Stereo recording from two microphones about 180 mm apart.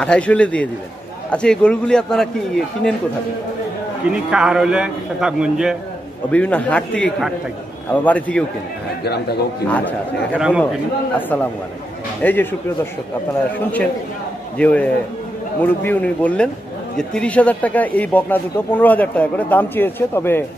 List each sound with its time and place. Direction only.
0.0 s a man's voice: 5° left (ahead or behind)
4.1 s a man's voice: 5° right (ahead or behind)
6.3 s speech: 5° left (ahead or behind)
9.0 s a man's voice: 65° left (ahead or behind)
9.7 s speech: 10° left (ahead or behind)
10.3 s a man's voice: 5° right (ahead or behind)
11.1 s speech: 10° left (ahead or behind)
14.6 s speech: 5° left (ahead or behind)